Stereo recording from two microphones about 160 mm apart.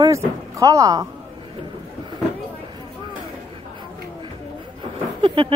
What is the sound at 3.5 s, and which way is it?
Chatter, 30° right (ahead or behind).